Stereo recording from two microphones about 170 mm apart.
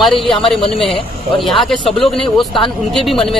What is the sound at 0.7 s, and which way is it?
Speech, 30° left (ahead or behind).